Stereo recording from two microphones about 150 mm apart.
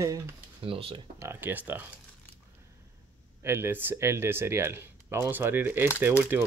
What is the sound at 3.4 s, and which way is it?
Speech, 15° right (ahead or behind).